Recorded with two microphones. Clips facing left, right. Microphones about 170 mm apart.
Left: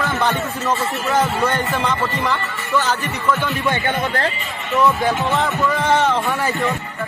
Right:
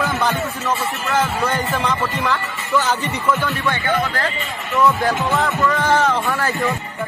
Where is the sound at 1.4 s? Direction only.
Centre (ahead or behind).